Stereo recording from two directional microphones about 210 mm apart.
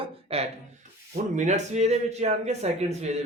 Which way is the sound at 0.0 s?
30° right (ahead or behind).